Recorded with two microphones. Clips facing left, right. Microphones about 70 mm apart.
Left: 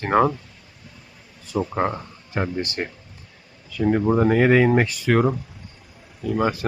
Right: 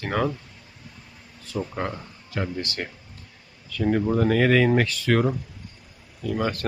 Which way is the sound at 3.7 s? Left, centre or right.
Centre.